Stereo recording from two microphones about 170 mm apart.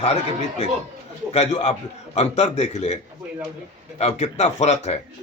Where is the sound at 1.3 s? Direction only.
40° left (ahead or behind).